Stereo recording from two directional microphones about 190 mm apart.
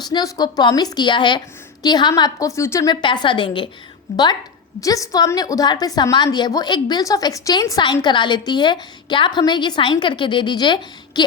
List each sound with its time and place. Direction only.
0.1 s a woman's voice: 20° left (ahead or behind)
4.8 s a woman's voice: 20° left (ahead or behind)